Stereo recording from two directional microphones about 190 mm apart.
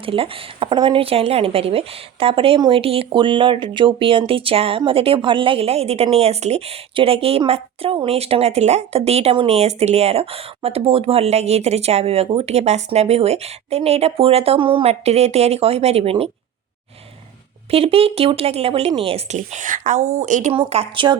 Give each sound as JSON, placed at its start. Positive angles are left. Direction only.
{"t": 0.0, "sound": "a woman's voice", "side_deg": -30}
{"t": 17.7, "sound": "a woman's voice", "side_deg": -30}
{"t": 20.6, "sound": "speech", "side_deg": -30}